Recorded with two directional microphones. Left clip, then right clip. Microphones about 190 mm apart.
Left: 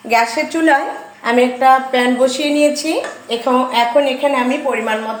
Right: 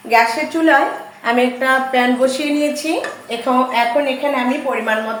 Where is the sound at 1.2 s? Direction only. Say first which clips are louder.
Left 3 dB; 20° left (ahead or behind); by 4.3 s 40° left (ahead or behind).